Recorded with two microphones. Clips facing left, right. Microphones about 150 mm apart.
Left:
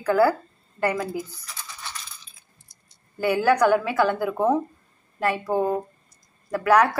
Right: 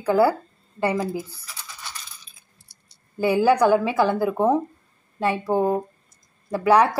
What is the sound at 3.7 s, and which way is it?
Speech, 25° right (ahead or behind).